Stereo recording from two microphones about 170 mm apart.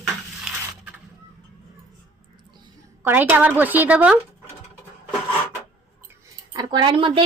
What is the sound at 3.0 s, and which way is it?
A woman's voice, 10° right (ahead or behind).